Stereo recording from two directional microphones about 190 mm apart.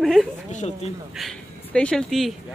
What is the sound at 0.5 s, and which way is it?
Speech, 35° left (ahead or behind).